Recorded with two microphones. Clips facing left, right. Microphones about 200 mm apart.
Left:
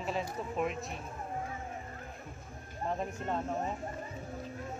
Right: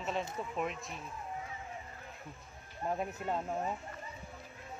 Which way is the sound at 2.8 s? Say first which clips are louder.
Even; 5° right (ahead or behind).